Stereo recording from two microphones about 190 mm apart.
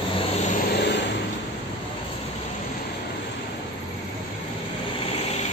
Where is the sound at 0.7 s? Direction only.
65° left (ahead or behind).